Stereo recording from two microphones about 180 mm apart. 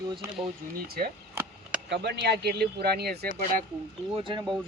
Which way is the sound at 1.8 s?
70° right (ahead or behind).